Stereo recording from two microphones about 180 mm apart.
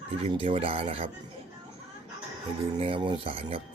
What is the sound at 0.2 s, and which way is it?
Speech, 30° right (ahead or behind).